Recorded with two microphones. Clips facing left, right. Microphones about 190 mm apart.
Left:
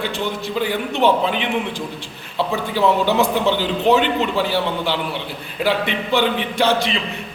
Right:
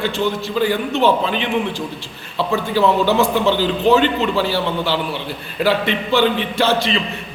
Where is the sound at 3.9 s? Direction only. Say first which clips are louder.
Right 2 dB; 15° left (ahead or behind).